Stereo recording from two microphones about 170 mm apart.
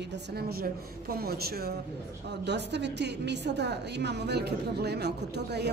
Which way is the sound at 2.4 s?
90° right.